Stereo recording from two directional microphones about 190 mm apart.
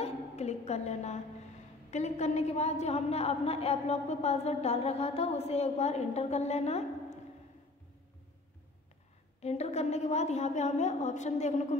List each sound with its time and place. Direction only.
0.0 s a sound: 35° left (ahead or behind)
1.9 s a woman's voice: 35° left (ahead or behind)
9.4 s a woman's voice: 35° left (ahead or behind)